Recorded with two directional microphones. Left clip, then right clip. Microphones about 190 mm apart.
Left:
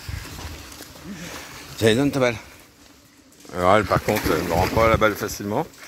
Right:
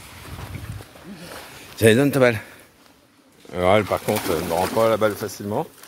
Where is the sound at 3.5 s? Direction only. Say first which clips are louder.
Left 1 dB; 20° right (ahead or behind); by 5.6 s 5° right (ahead or behind).